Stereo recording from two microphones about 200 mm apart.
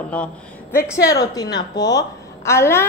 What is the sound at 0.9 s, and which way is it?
A woman's voice, 20° left (ahead or behind).